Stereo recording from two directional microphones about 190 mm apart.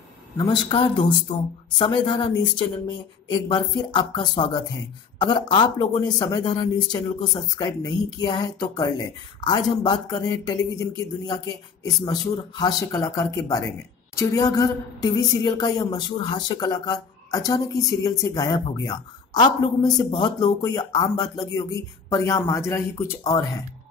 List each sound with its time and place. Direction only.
0.4 s a woman's voice: 25° left (ahead or behind)